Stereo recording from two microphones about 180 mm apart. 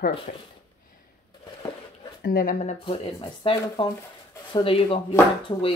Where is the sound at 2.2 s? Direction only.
55° left (ahead or behind).